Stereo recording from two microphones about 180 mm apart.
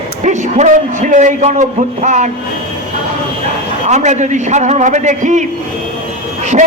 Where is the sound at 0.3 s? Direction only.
40° right (ahead or behind).